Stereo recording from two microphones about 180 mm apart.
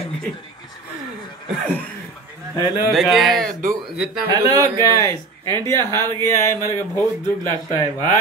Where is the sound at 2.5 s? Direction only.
20° right (ahead or behind).